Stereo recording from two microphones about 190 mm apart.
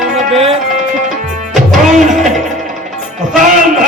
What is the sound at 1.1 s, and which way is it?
Music, centre (ahead or behind).